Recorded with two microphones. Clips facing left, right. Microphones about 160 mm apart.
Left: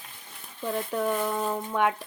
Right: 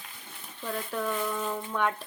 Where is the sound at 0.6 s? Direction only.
20° left (ahead or behind).